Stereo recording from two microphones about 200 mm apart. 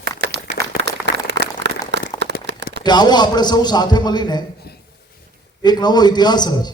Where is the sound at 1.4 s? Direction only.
60° right (ahead or behind).